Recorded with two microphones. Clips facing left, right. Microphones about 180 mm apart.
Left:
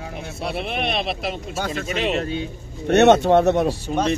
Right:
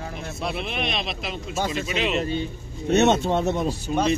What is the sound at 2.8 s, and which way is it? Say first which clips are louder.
Speech: left 5 dB; 65° left (ahead or behind).